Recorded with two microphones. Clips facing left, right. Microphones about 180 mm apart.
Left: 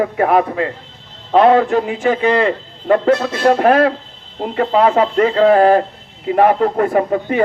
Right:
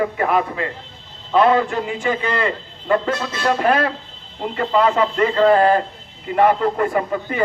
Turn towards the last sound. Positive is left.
turn(degrees=40)  # may be behind; listen again after turning